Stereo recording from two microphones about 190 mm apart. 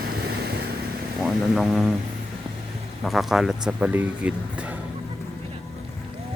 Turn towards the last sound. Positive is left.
turn(degrees=-5)  # may be behind; listen again after turning